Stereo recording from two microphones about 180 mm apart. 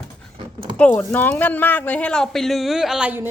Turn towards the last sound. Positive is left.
turn(degrees=-10)  # may be behind; listen again after turning